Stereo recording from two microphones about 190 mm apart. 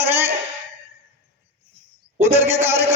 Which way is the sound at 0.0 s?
10° right (ahead or behind).